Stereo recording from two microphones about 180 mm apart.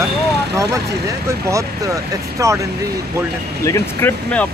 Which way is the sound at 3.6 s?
15° left (ahead or behind).